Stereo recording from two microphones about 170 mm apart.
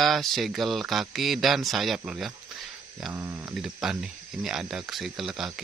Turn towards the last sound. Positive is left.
turn(degrees=-5)  # may be behind; listen again after turning